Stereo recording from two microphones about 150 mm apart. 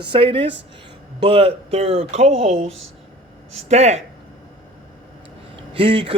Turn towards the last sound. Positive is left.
turn(degrees=-40)  # may be behind; listen again after turning